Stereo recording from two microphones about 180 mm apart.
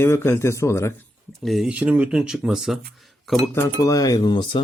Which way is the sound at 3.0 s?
Centre (ahead or behind).